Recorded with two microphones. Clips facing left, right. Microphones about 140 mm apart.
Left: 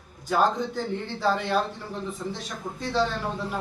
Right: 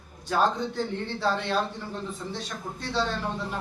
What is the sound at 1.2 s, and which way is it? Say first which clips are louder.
A man's voice: left 2 dB; 10° left (ahead or behind).